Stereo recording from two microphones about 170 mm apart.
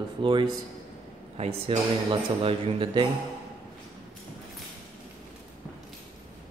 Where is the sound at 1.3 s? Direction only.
40° right (ahead or behind).